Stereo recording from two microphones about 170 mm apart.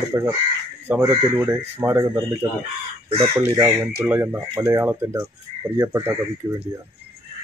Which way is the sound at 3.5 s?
10° right (ahead or behind).